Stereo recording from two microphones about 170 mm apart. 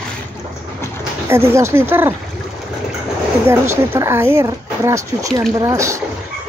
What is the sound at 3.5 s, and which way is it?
Speech, 15° right (ahead or behind).